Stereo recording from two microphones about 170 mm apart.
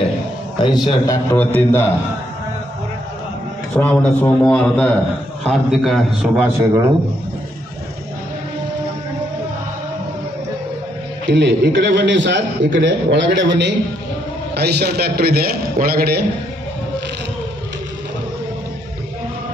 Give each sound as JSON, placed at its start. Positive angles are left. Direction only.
{"t": 0.8, "sound": "a man's voice", "side_deg": 20}
{"t": 3.7, "sound": "a man's voice", "side_deg": 10}
{"t": 11.2, "sound": "a man's voice", "side_deg": -90}
{"t": 14.5, "sound": "a man's voice", "side_deg": -75}